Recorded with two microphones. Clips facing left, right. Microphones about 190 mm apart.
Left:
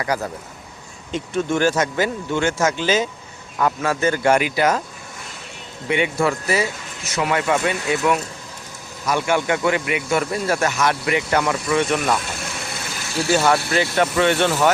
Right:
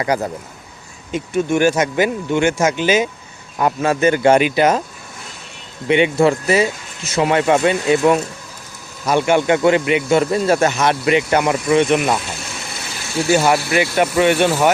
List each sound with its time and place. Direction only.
0.0 s speech: 20° right (ahead or behind)
1.1 s speech: 10° right (ahead or behind)
5.9 s speech: 25° right (ahead or behind)
13.3 s speech: 10° right (ahead or behind)